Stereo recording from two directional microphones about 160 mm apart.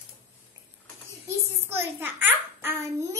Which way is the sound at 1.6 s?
15° right (ahead or behind).